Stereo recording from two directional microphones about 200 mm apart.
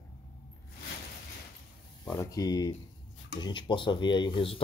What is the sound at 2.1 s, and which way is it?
Speech, 15° left (ahead or behind).